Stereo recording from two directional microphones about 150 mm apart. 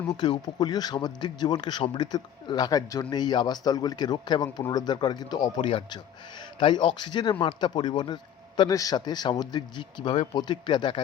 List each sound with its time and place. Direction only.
0.1 s speech: 25° left (ahead or behind)